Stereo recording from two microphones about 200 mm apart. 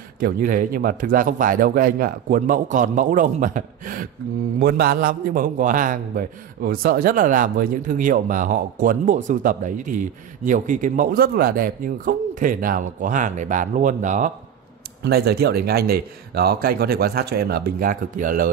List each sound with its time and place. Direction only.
0.2 s a man's voice: 45° right (ahead or behind)
15.0 s a man's voice: 55° right (ahead or behind)